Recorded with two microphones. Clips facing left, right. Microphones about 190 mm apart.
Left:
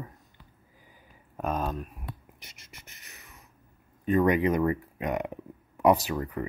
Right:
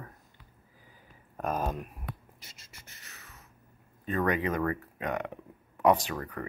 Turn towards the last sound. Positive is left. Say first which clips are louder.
# left 3 dB
turn(degrees=10)  # may be behind; listen again after turning